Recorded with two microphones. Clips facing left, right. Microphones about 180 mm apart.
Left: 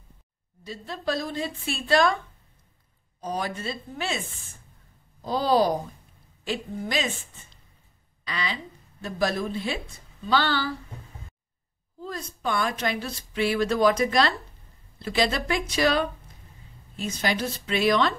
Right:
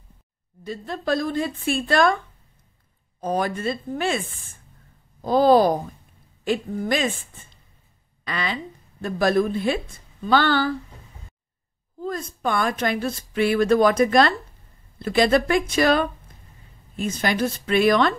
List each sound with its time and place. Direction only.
0.7 s a woman's voice: 55° right (ahead or behind)
3.2 s a woman's voice: 55° right (ahead or behind)
5.2 s a woman's voice: 55° right (ahead or behind)
8.2 s a woman's voice: 55° right (ahead or behind)
12.0 s a woman's voice: 50° right (ahead or behind)